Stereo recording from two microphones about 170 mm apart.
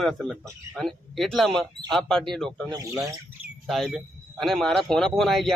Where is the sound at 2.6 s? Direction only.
20° right (ahead or behind).